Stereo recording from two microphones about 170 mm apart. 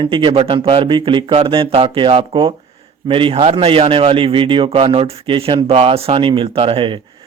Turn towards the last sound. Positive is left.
turn(degrees=-30)  # may be behind; listen again after turning